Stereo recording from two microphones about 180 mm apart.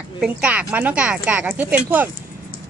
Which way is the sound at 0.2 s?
5° right (ahead or behind).